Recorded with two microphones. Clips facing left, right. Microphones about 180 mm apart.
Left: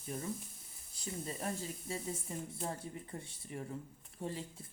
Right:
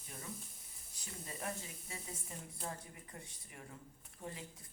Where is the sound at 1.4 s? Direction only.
35° left (ahead or behind).